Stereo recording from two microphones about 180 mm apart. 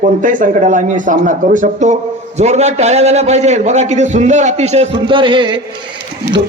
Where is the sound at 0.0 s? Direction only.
45° right (ahead or behind).